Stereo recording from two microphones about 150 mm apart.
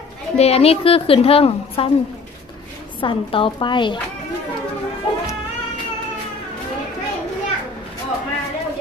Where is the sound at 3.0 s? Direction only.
35° left (ahead or behind).